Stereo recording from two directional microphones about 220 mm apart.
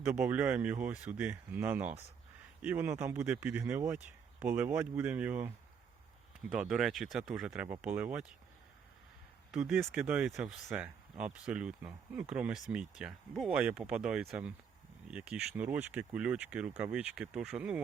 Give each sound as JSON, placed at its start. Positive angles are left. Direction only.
{"t": 0.0, "sound": "speech", "side_deg": -10}
{"t": 6.5, "sound": "speech", "side_deg": 0}
{"t": 9.5, "sound": "speech", "side_deg": -5}